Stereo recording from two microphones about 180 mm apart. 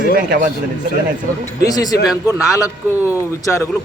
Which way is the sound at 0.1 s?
55° right (ahead or behind).